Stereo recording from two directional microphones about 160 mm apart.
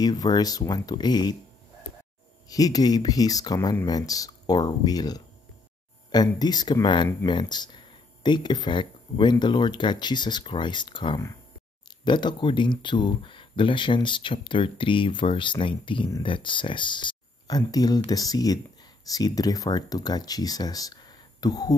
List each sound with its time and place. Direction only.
0.0 s speech: 25° left (ahead or behind)
2.5 s speech: 25° left (ahead or behind)